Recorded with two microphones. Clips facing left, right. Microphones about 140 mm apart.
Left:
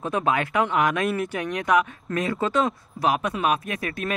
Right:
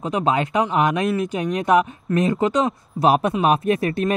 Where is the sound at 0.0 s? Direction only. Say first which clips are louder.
Right 3 dB; 20° right (ahead or behind).